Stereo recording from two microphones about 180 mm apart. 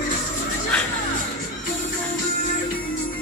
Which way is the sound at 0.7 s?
5° left (ahead or behind).